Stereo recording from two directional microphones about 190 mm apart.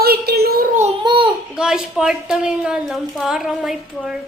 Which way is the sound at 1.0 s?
25° right (ahead or behind).